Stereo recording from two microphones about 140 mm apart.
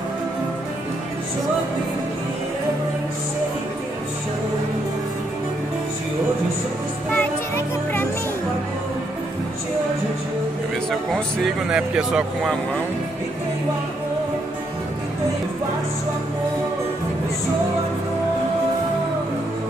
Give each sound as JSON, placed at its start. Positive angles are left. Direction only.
{"t": 7.1, "sound": "music", "side_deg": 15}
{"t": 10.9, "sound": "speech", "side_deg": 5}